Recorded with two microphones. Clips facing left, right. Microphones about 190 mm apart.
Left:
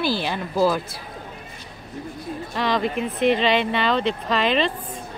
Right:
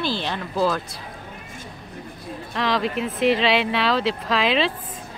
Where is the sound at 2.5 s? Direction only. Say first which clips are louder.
Even; centre (ahead or behind).